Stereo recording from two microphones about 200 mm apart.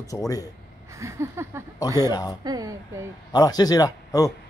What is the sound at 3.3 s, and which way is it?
Speech, 20° left (ahead or behind).